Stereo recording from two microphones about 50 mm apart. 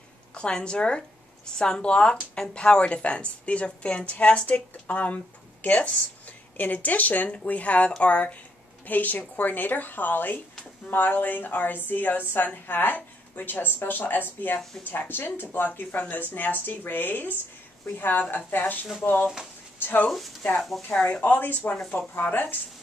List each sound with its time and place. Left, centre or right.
0.3 s a woman's voice: centre; by 20.1 s left
21.1 s speech: left